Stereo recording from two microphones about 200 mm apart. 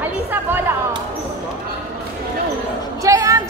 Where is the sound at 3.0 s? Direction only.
15° right (ahead or behind).